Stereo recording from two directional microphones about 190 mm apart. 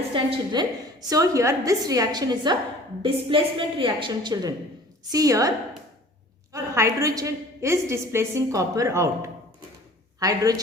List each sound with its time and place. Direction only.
0.1 s a woman's voice: 25° right (ahead or behind)